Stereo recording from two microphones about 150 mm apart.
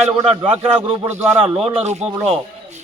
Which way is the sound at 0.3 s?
40° right (ahead or behind).